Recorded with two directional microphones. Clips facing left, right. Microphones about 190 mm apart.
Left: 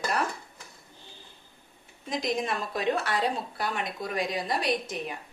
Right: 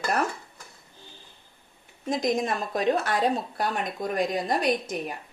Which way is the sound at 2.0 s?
45° right (ahead or behind).